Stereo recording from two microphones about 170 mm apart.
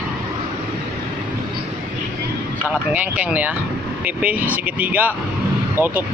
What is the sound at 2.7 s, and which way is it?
Speech, 10° right (ahead or behind).